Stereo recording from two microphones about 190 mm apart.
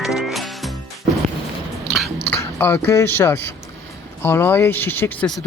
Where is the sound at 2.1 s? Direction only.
10° left (ahead or behind).